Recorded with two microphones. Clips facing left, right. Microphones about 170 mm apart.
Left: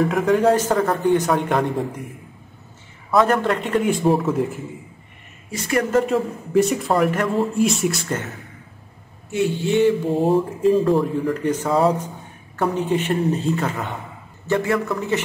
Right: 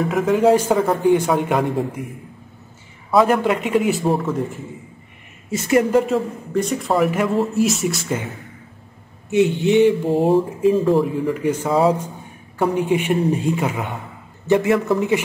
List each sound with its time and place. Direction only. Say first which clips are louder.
0.0 s a man's voice: right 1 dB; centre (ahead or behind)
3.2 s speech: right 2 dB; 5° right (ahead or behind)
5.5 s speech: right 5 dB; 25° right (ahead or behind)
5.9 s speech: right 1 dB; 5° right (ahead or behind)
9.3 s speech: right 4 dB; 20° right (ahead or behind)
10.1 s a man's voice: right 2 dB; centre (ahead or behind); by 15.2 s 15° right (ahead or behind)